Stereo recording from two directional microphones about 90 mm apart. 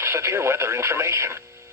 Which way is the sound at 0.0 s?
30° right (ahead or behind).